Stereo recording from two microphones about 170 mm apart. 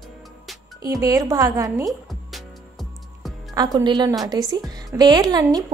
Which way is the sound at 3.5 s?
25° right (ahead or behind).